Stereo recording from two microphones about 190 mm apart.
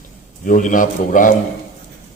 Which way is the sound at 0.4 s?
45° left (ahead or behind).